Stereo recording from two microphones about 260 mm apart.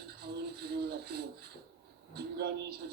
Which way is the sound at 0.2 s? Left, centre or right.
Right.